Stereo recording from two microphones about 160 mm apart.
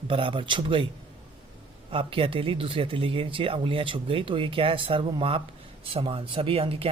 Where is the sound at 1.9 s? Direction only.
35° right (ahead or behind).